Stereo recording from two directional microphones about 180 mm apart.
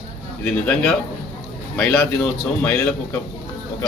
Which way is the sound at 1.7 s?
Centre (ahead or behind).